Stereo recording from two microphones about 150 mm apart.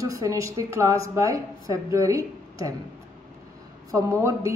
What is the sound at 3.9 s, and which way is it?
Speech, 20° right (ahead or behind).